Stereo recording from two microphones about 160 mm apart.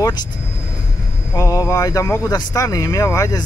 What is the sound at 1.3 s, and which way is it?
Speech, 20° left (ahead or behind).